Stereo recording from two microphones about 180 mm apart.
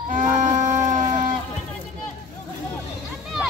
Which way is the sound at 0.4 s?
45° right (ahead or behind).